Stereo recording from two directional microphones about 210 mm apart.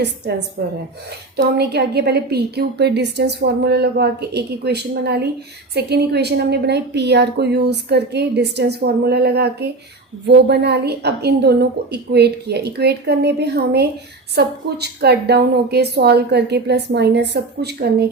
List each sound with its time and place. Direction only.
1.5 s a woman's voice: 50° right (ahead or behind)